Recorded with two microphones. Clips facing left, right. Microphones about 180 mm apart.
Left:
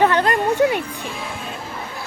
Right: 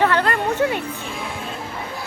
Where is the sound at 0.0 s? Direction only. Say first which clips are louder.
Left 2 dB; 15° left (ahead or behind).